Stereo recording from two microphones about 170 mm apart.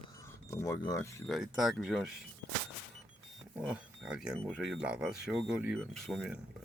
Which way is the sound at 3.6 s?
5° right (ahead or behind).